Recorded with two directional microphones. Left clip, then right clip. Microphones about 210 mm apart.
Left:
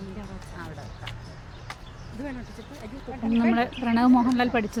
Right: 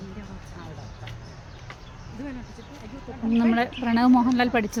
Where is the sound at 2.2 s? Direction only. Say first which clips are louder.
Left 1 dB; 40° left (ahead or behind).